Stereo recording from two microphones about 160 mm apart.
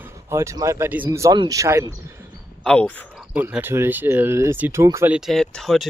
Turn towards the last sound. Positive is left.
turn(degrees=0)  # may be behind; listen again after turning